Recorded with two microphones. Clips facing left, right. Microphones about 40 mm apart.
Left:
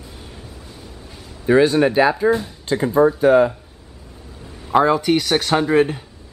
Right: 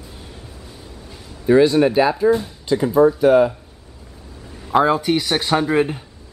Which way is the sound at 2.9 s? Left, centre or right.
Left.